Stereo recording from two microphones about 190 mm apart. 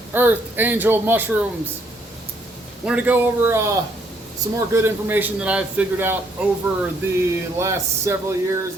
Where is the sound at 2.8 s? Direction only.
10° right (ahead or behind).